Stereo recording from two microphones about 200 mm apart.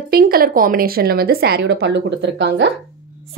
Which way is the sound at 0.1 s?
50° right (ahead or behind).